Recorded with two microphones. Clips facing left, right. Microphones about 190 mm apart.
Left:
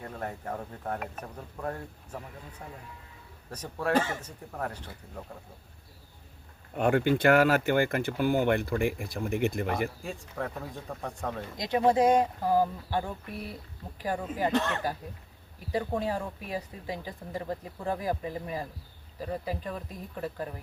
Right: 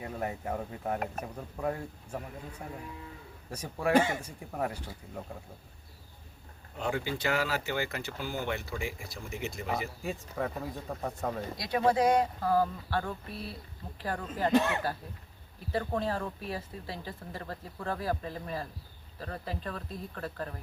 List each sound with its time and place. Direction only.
0.0 s speech: 10° right (ahead or behind)
3.5 s speech: 10° right (ahead or behind)
6.7 s speech: 60° left (ahead or behind)
10.0 s speech: 5° right (ahead or behind)
11.5 s speech: 20° left (ahead or behind)
14.5 s speech: 10° right (ahead or behind)
15.7 s speech: 15° left (ahead or behind)